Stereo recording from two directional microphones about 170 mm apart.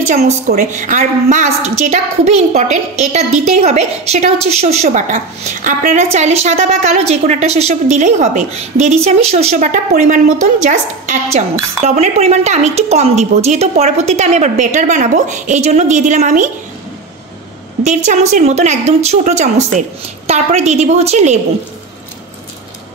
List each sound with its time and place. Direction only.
0.2 s a woman's voice: 65° right (ahead or behind)
0.7 s a woman's voice: 50° right (ahead or behind)
9.7 s a woman's voice: 50° right (ahead or behind)
17.8 s a woman's voice: 45° right (ahead or behind)